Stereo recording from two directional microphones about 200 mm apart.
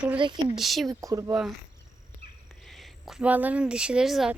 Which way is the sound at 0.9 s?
15° right (ahead or behind).